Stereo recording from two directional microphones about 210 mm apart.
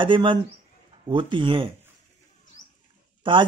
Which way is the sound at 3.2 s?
25° right (ahead or behind).